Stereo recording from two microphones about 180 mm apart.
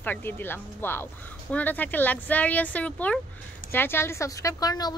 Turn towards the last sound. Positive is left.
turn(degrees=20)  # may be behind; listen again after turning